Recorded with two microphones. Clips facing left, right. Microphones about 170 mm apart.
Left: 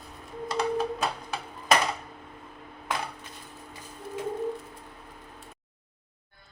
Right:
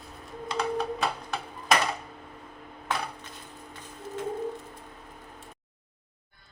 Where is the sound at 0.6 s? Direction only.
5° left (ahead or behind).